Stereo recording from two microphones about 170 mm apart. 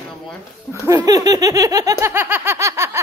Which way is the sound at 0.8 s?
20° right (ahead or behind).